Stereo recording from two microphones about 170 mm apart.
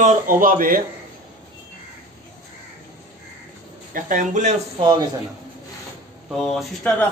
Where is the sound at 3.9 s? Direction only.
50° right (ahead or behind).